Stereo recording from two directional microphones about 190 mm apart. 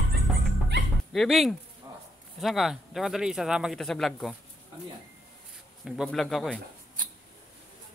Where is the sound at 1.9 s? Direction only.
15° right (ahead or behind).